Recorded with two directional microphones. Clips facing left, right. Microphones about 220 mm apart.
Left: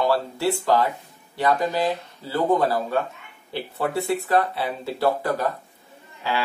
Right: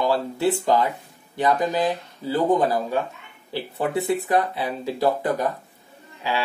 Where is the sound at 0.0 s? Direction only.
20° right (ahead or behind).